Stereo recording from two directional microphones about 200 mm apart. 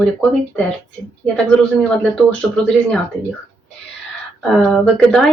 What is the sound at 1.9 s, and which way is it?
Speech, 5° left (ahead or behind).